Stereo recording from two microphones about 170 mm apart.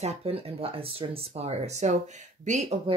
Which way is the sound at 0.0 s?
35° right (ahead or behind).